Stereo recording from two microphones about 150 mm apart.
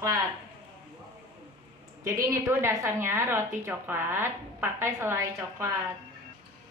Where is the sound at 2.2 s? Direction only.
20° right (ahead or behind).